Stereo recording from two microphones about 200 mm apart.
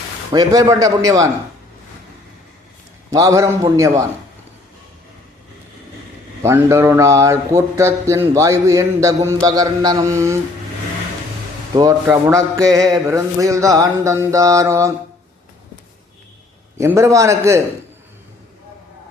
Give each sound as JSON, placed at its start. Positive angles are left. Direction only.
{"t": 0.3, "sound": "speech", "side_deg": -20}
{"t": 3.1, "sound": "speech", "side_deg": -15}
{"t": 6.4, "sound": "speech", "side_deg": -15}
{"t": 11.7, "sound": "speech", "side_deg": -20}
{"t": 16.7, "sound": "speech", "side_deg": -15}